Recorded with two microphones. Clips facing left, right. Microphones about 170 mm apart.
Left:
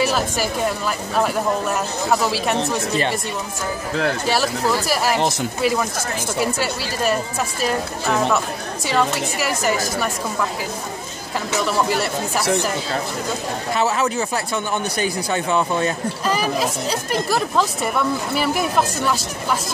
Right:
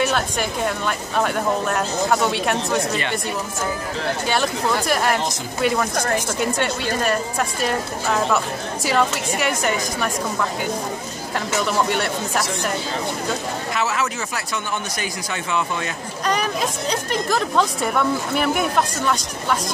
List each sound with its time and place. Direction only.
0.0 s speech: centre (ahead or behind)
4.3 s speech: 5° left (ahead or behind)
5.9 s speech: 55° right (ahead or behind)
6.4 s speech: centre (ahead or behind)
8.8 s speech: centre (ahead or behind)
11.5 s speech: centre (ahead or behind)
13.7 s speech: 35° left (ahead or behind)
16.9 s speech: 5° left (ahead or behind)